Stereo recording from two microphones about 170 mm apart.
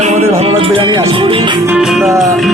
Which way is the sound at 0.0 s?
40° right (ahead or behind).